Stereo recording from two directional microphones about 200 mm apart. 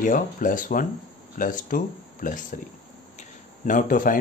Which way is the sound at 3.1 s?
40° left (ahead or behind).